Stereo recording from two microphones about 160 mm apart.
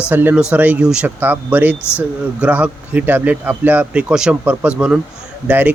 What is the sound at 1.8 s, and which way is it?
Speech, 15° left (ahead or behind).